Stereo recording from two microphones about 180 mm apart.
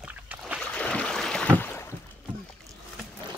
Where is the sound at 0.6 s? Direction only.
5° left (ahead or behind).